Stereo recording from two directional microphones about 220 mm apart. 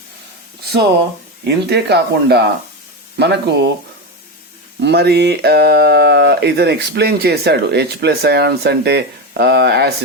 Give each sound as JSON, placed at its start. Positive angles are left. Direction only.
{"t": 1.5, "sound": "speech", "side_deg": -50}
{"t": 4.8, "sound": "speech", "side_deg": -50}